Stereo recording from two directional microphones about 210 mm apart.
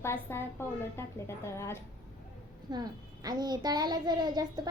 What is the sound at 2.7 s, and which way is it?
A child's voice, 20° right (ahead or behind).